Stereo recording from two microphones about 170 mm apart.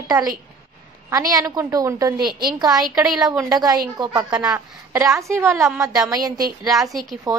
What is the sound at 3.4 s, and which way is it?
A woman's voice, 20° right (ahead or behind).